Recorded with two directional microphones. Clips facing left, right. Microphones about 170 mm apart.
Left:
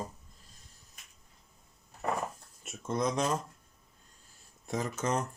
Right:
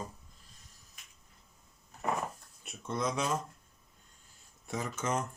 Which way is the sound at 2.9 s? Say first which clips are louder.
Left 3 dB; 45° left (ahead or behind).